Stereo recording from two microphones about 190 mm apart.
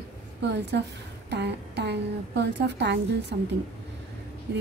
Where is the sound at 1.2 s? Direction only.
65° right (ahead or behind).